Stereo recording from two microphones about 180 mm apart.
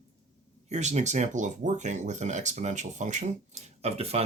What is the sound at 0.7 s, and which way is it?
Speech, 40° right (ahead or behind).